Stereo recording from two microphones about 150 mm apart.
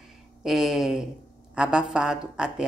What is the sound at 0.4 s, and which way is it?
Speech, 5° right (ahead or behind).